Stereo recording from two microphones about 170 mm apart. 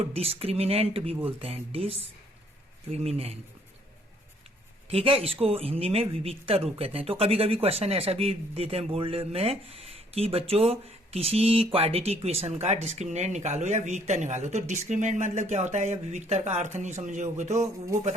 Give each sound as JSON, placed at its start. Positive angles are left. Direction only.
{"t": 0.0, "sound": "speech", "side_deg": -35}
{"t": 4.9, "sound": "speech", "side_deg": -35}